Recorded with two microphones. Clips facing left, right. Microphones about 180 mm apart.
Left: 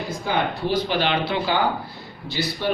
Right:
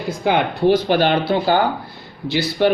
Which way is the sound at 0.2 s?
70° right (ahead or behind).